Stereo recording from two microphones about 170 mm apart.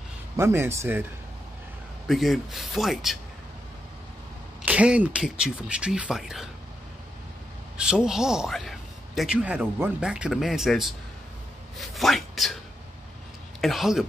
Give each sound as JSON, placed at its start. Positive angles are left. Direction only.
{"t": 0.4, "sound": "speech", "side_deg": -15}
{"t": 2.0, "sound": "a man's voice", "side_deg": 0}
{"t": 4.6, "sound": "a man's voice", "side_deg": -5}
{"t": 7.7, "sound": "a man's voice", "side_deg": -5}
{"t": 13.6, "sound": "a man's voice", "side_deg": 0}